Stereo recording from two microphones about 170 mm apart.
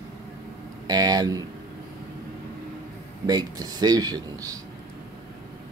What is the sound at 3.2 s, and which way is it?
Speech, 20° right (ahead or behind).